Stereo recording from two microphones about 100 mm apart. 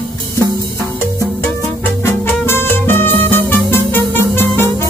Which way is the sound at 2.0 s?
25° left (ahead or behind).